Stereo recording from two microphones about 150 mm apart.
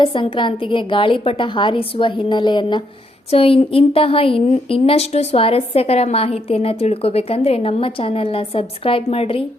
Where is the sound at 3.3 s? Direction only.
40° left (ahead or behind).